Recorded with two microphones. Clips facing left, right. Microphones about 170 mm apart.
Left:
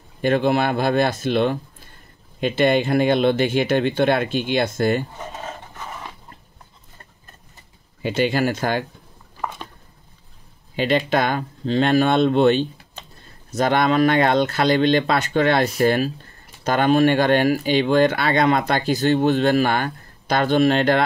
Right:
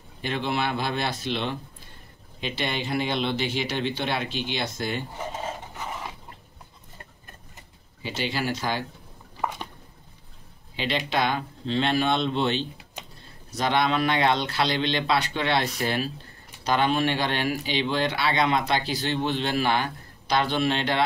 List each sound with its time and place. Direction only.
0.2 s speech: 50° left (ahead or behind)
8.0 s speech: 50° left (ahead or behind)
10.8 s speech: 50° left (ahead or behind)